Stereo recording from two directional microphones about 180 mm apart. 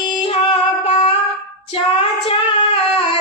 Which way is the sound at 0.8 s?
35° left (ahead or behind).